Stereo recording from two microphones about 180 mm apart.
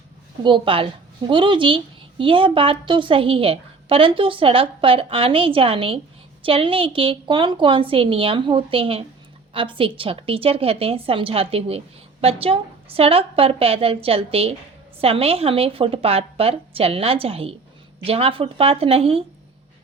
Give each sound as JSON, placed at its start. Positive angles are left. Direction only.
{"t": 0.4, "sound": "a woman's voice", "side_deg": -25}